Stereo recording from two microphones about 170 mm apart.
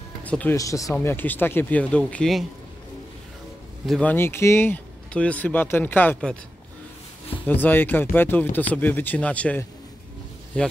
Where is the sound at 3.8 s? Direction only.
10° left (ahead or behind).